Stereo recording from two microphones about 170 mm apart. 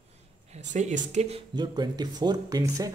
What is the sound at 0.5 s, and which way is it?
Speech, 45° right (ahead or behind).